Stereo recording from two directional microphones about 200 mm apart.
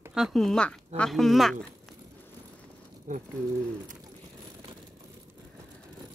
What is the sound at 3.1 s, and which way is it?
Speech, 40° right (ahead or behind).